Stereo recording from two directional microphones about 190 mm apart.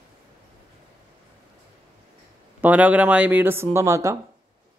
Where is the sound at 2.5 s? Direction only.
10° right (ahead or behind).